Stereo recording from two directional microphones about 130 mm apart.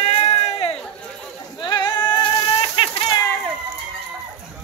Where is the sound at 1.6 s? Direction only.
35° left (ahead or behind).